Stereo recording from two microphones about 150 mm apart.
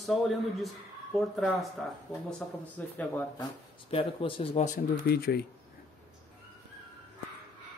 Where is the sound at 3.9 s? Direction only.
40° left (ahead or behind).